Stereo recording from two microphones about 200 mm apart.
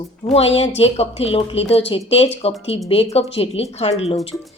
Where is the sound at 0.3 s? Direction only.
30° left (ahead or behind).